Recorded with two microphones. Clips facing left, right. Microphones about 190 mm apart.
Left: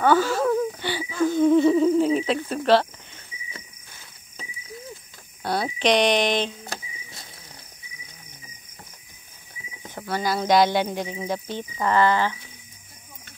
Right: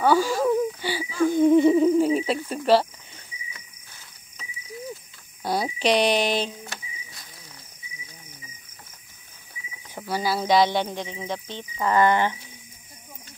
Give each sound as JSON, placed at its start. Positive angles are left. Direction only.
{"t": 0.0, "sound": "speech", "side_deg": -10}
{"t": 0.7, "sound": "a sound", "side_deg": -10}
{"t": 2.5, "sound": "speech", "side_deg": -10}
{"t": 5.4, "sound": "speech", "side_deg": -10}
{"t": 6.7, "sound": "cricket", "side_deg": 40}
{"t": 9.9, "sound": "speech", "side_deg": -5}
{"t": 11.8, "sound": "speech", "side_deg": -15}